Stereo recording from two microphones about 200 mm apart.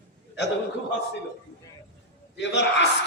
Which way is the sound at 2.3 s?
60° left (ahead or behind).